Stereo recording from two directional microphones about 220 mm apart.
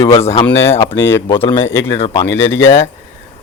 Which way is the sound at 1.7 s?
10° left (ahead or behind).